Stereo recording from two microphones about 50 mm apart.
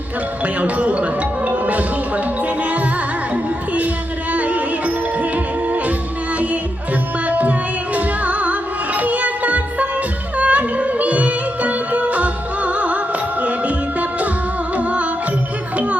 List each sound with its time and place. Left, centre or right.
0.4 s music: right
4.3 s music: right
7.3 s music: right
14.8 s music: right